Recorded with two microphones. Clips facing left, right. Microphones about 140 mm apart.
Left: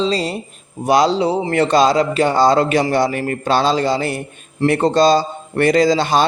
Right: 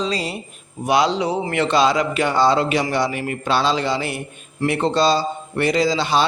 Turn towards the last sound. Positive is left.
turn(degrees=45)  # may be behind; listen again after turning